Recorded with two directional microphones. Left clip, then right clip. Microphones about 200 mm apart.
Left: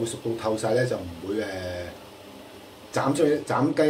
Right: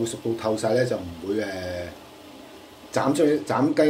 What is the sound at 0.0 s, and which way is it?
Speech, 25° right (ahead or behind).